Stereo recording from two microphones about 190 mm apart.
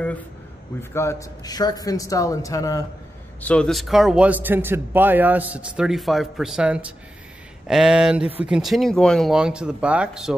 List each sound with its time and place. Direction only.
0.9 s a man's voice: 15° left (ahead or behind)
3.3 s a man's voice: 5° left (ahead or behind)